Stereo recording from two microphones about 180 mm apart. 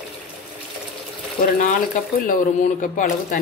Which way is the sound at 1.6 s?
50° left (ahead or behind).